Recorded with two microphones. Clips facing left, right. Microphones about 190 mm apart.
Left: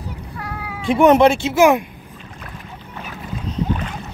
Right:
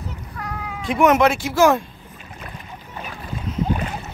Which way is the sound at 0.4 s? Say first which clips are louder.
Right 1 dB; 10° left (ahead or behind).